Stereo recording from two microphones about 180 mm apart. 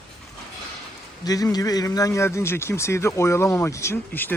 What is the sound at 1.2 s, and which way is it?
A man's voice, 20° left (ahead or behind).